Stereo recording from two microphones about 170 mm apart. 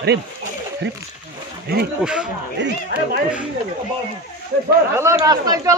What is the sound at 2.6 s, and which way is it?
Speech, 90° right.